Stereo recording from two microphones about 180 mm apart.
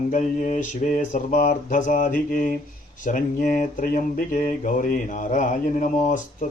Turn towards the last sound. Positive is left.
turn(degrees=45)  # may be behind; listen again after turning